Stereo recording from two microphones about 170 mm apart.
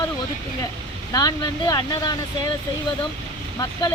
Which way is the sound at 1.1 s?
25° left (ahead or behind).